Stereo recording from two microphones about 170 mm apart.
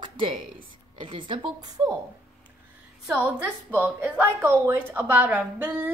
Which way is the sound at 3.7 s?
10° right (ahead or behind).